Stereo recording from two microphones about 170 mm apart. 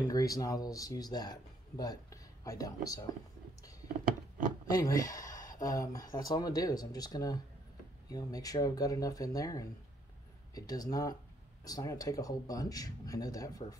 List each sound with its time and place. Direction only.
0.1 s speech: 20° left (ahead or behind)
4.0 s a sound: 50° right (ahead or behind)
4.7 s speech: 20° left (ahead or behind)